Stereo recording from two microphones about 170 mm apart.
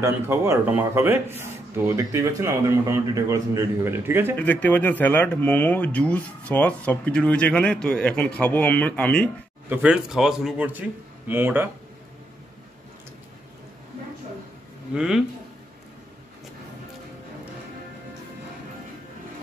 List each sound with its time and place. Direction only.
0.0 s a man's voice: 15° right (ahead or behind)
4.4 s speech: 10° left (ahead or behind)
9.7 s a man's voice: 5° right (ahead or behind)
15.0 s a man's voice: 5° right (ahead or behind)